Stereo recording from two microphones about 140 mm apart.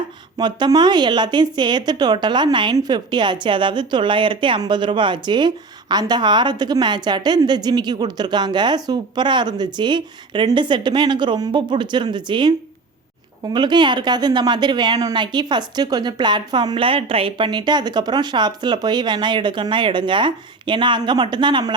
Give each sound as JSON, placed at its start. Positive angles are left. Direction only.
{"t": 0.3, "sound": "speech", "side_deg": -30}